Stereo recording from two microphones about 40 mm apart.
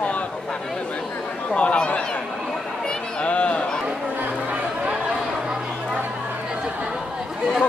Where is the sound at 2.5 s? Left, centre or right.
Centre.